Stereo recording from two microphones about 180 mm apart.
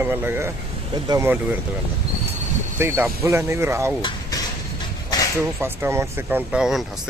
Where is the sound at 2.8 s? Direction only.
15° right (ahead or behind).